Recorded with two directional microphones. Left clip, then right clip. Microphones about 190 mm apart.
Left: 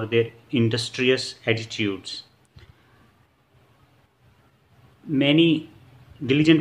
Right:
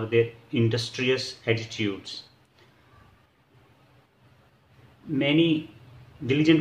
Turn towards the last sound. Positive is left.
turn(degrees=35)  # may be behind; listen again after turning